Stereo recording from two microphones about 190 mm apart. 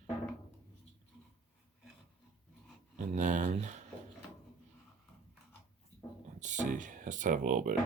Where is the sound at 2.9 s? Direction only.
40° right (ahead or behind).